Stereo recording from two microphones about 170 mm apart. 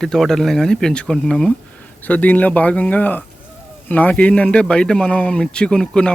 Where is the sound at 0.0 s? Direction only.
Centre (ahead or behind).